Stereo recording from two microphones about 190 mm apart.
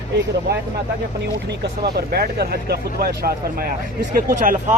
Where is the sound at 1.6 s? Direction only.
60° right (ahead or behind).